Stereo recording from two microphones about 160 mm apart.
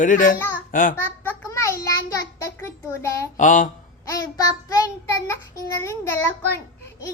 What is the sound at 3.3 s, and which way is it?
Speech, 55° left (ahead or behind).